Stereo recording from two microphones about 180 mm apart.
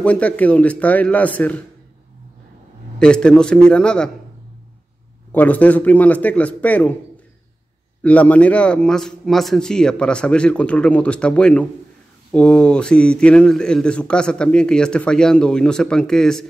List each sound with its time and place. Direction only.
0.0 s a man's voice: 5° left (ahead or behind)
3.0 s speech: 5° left (ahead or behind)
5.3 s a man's voice: 10° left (ahead or behind)
8.0 s speech: 5° left (ahead or behind)